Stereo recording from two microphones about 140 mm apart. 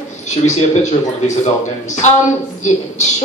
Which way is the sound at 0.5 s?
55° left (ahead or behind).